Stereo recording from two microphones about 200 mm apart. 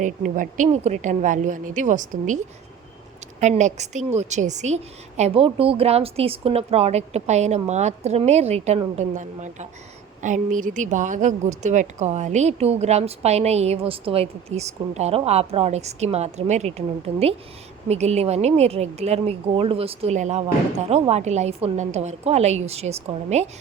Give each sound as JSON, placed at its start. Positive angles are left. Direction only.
{"t": 0.0, "sound": "a woman's voice", "side_deg": -40}
{"t": 3.4, "sound": "a woman's voice", "side_deg": -35}